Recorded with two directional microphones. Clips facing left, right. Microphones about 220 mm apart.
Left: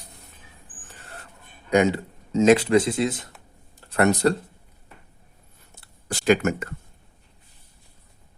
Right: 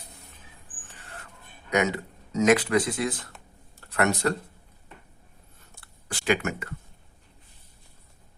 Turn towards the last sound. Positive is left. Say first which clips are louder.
# left 6 dB
turn(degrees=45)  # may be behind; listen again after turning